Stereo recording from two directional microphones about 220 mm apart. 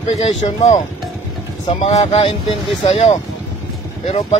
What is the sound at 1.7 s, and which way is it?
Speech, 25° left (ahead or behind).